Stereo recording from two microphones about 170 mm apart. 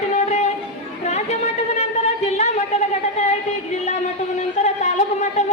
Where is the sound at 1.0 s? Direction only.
40° left (ahead or behind).